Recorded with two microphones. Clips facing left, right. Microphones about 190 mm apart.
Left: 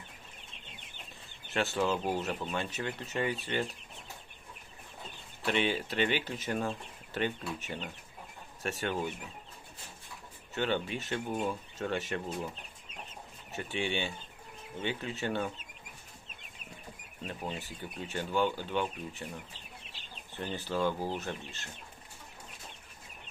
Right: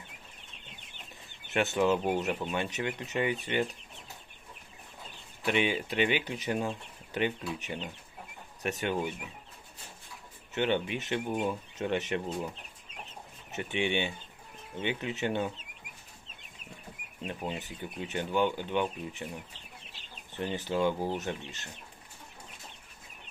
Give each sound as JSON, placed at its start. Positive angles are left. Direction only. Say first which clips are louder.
{"t": 1.5, "sound": "speech", "louder": "right 4 dB", "side_deg": -20}
{"t": 5.5, "sound": "speech", "louder": "right 2 dB", "side_deg": -15}
{"t": 10.5, "sound": "speech", "louder": "right 3 dB", "side_deg": -20}
{"t": 13.5, "sound": "speech", "louder": "right 3 dB", "side_deg": -20}
{"t": 17.2, "sound": "speech", "louder": "right 3 dB", "side_deg": -15}
{"t": 20.3, "sound": "speech", "louder": "right 3 dB", "side_deg": -20}